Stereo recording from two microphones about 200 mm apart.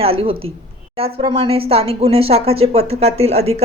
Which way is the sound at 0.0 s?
30° right (ahead or behind).